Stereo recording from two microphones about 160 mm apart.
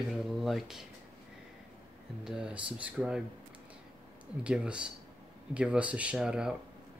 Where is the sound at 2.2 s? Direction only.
5° right (ahead or behind).